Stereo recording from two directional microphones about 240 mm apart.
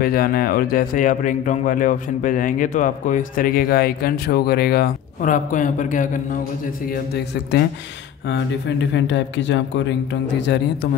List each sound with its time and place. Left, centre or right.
0.0 s speech: left
8.3 s speech: left